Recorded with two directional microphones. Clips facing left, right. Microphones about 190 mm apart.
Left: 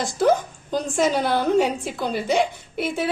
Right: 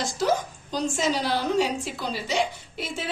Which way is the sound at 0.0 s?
55° left (ahead or behind).